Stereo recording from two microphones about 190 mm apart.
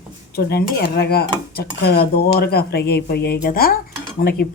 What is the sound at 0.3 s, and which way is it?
Speech, 55° left (ahead or behind).